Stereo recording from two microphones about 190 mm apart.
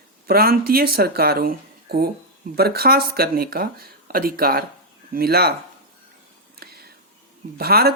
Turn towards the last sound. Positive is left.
turn(degrees=-55)  # may be behind; listen again after turning